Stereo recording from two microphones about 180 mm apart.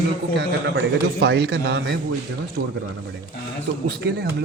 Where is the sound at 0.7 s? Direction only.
70° right (ahead or behind).